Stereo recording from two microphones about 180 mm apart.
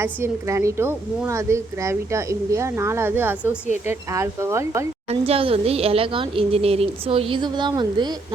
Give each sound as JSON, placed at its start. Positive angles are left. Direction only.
{"t": 0.0, "sound": "a woman's voice", "side_deg": -15}
{"t": 5.0, "sound": "a woman's voice", "side_deg": -35}